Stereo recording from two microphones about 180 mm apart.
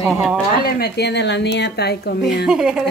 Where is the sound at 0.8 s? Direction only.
65° left (ahead or behind).